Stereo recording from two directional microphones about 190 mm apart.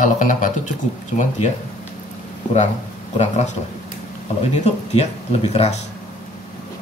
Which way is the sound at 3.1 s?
35° left (ahead or behind).